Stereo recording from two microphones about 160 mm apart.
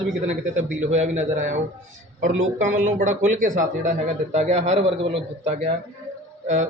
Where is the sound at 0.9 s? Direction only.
45° right (ahead or behind).